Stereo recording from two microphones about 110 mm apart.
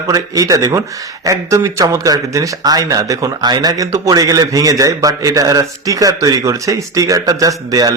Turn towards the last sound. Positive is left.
turn(degrees=-35)  # may be behind; listen again after turning